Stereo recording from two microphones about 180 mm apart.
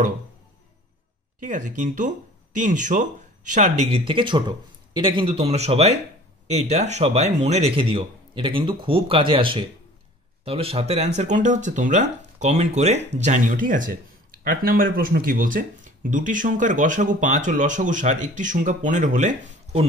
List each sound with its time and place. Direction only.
1.5 s speech: 45° right (ahead or behind)
4.0 s a man's voice: 30° right (ahead or behind)